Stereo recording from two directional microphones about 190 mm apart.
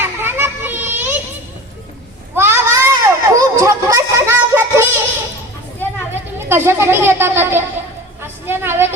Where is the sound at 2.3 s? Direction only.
10° right (ahead or behind).